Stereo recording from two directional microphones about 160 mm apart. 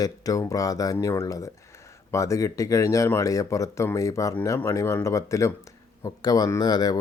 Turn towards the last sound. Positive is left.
turn(degrees=25)  # may be behind; listen again after turning